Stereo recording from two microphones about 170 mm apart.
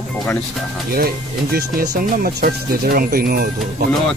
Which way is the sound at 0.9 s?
60° right (ahead or behind).